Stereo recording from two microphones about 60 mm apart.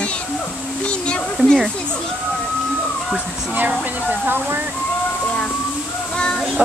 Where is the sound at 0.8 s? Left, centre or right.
Centre.